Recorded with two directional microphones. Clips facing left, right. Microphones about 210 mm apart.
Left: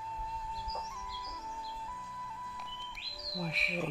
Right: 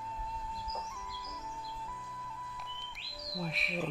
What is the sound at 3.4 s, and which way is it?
Speech, centre (ahead or behind).